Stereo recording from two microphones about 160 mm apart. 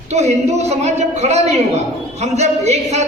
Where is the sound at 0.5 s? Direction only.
45° right (ahead or behind).